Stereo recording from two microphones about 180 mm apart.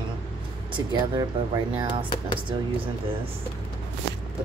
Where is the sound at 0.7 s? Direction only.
25° right (ahead or behind).